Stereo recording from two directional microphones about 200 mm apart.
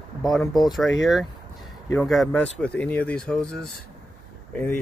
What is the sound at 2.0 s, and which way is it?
Speech, centre (ahead or behind).